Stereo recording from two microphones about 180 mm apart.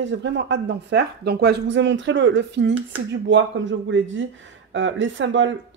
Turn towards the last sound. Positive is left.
turn(degrees=-90)